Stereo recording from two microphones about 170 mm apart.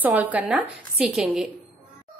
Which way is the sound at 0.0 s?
10° right (ahead or behind).